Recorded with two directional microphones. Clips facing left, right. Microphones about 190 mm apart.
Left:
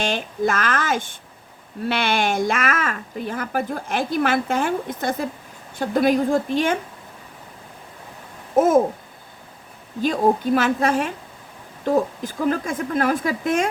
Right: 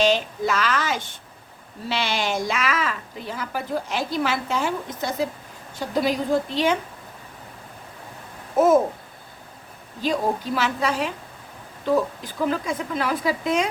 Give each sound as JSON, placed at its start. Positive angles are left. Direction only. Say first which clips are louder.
{"t": 0.0, "sound": "speech", "louder": "right 2 dB", "side_deg": 50}
{"t": 10.0, "sound": "speech", "louder": "left 5 dB", "side_deg": 50}